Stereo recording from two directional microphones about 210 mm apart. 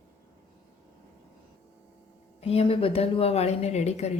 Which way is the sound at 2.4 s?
25° left (ahead or behind).